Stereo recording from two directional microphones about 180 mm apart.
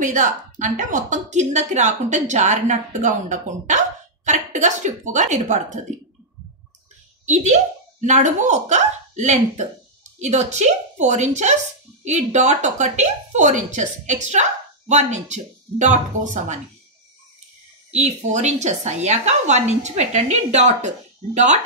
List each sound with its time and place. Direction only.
0.0 s a woman's voice: 45° right (ahead or behind)
7.2 s a woman's voice: 40° right (ahead or behind)
17.9 s a woman's voice: 40° right (ahead or behind)